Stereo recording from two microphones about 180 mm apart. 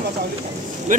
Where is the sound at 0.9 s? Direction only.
45° right (ahead or behind).